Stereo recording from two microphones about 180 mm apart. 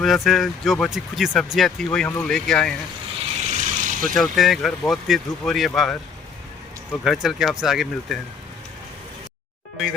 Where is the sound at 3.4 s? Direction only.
40° right (ahead or behind).